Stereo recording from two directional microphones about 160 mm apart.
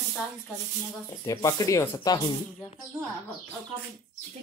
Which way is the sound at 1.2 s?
20° left (ahead or behind).